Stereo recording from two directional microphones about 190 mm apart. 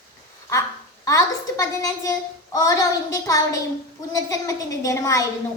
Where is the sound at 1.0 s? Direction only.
15° left (ahead or behind).